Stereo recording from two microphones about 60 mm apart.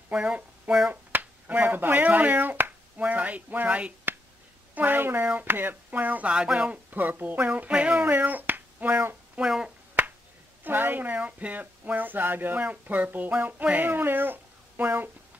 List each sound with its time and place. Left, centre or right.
0.1 s speech: centre
6.7 s speech: right
8.1 s finger snapping: right
9.4 s speech: centre
10.0 s finger snapping: right
10.6 s speech: right